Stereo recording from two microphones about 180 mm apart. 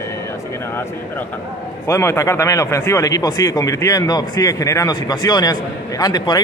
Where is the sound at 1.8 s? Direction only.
15° left (ahead or behind).